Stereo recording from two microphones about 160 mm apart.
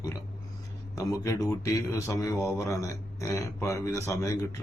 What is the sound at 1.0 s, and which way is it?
Speech, 20° left (ahead or behind).